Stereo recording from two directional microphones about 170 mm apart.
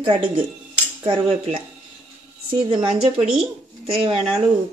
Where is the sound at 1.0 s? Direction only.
35° right (ahead or behind).